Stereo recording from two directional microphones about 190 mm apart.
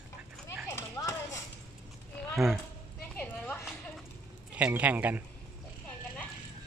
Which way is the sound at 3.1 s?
10° left (ahead or behind).